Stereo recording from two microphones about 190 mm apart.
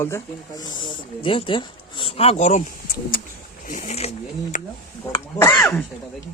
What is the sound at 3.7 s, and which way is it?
Speech, 40° left (ahead or behind).